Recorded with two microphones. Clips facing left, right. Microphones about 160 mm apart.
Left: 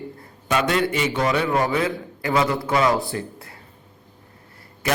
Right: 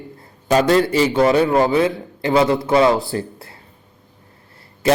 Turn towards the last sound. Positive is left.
turn(degrees=-30)  # may be behind; listen again after turning